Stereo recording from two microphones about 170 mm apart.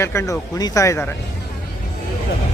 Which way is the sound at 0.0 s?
15° left (ahead or behind).